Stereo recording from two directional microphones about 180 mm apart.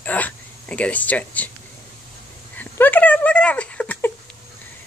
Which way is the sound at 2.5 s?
10° left (ahead or behind).